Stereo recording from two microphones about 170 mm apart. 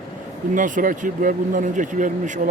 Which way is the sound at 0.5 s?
50° right (ahead or behind).